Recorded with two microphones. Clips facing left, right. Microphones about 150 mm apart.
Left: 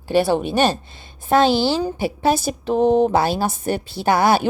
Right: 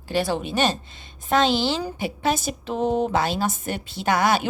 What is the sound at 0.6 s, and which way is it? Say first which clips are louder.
A woman's voice: left 4 dB; 35° left (ahead or behind).